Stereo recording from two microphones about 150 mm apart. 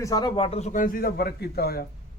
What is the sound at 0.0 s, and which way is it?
A man's voice, 25° left (ahead or behind).